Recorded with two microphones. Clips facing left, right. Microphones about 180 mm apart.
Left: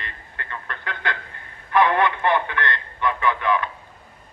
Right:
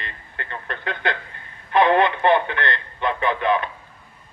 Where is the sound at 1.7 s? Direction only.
25° right (ahead or behind).